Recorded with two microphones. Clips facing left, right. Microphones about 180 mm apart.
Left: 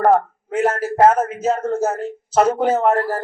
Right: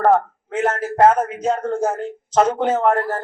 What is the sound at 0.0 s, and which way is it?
A man's voice, 10° left (ahead or behind).